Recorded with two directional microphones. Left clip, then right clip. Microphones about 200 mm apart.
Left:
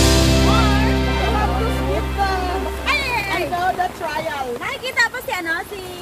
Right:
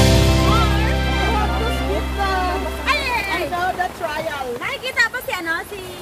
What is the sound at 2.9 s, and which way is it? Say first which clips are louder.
Music: even; 20° left (ahead or behind).